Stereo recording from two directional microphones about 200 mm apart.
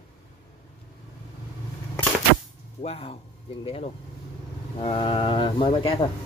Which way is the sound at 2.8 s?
30° left (ahead or behind).